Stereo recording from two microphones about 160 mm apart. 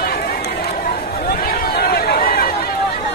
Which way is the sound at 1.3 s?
65° left (ahead or behind).